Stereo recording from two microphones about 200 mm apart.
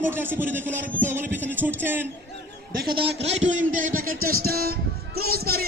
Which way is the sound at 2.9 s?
30° right (ahead or behind).